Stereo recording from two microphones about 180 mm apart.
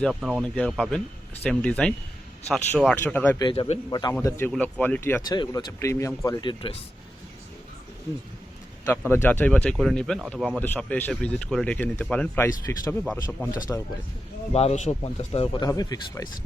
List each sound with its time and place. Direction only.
0.0 s speech: centre (ahead or behind)
3.3 s speech: 25° left (ahead or behind)
8.9 s speech: 15° left (ahead or behind)
12.6 s speech: 20° left (ahead or behind)
14.5 s speech: 35° left (ahead or behind); by 16.3 s 20° left (ahead or behind)